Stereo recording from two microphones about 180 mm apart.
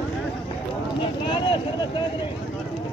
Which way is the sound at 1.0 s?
30° left (ahead or behind).